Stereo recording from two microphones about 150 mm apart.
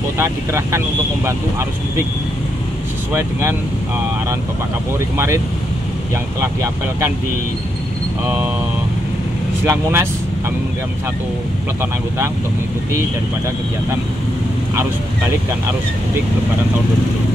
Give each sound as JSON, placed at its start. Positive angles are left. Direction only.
{"t": 0.2, "sound": "speech", "side_deg": -20}
{"t": 3.1, "sound": "speech", "side_deg": -15}
{"t": 5.1, "sound": "speech", "side_deg": -15}
{"t": 9.7, "sound": "speech", "side_deg": -15}